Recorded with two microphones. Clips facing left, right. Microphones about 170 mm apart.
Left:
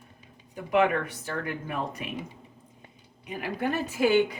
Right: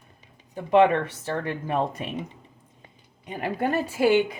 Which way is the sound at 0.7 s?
30° right (ahead or behind).